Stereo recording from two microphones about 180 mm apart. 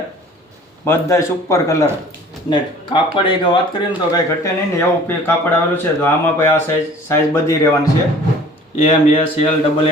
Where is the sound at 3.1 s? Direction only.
25° left (ahead or behind).